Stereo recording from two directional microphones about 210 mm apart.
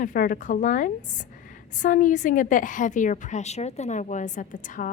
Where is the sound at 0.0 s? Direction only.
40° left (ahead or behind).